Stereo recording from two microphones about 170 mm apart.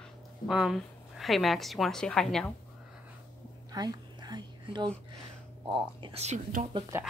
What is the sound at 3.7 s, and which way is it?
Whispering, 25° right (ahead or behind).